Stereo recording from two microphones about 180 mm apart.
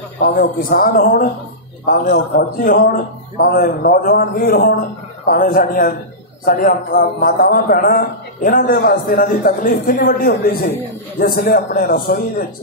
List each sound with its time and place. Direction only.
0.2 s a man's voice: 55° left (ahead or behind)